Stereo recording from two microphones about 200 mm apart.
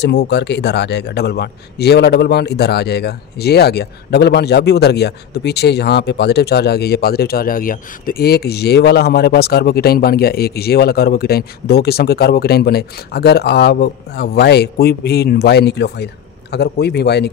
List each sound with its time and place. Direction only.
0.0 s speech: 60° left (ahead or behind)